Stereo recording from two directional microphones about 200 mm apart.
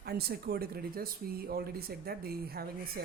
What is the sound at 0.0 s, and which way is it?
Speech, 50° right (ahead or behind).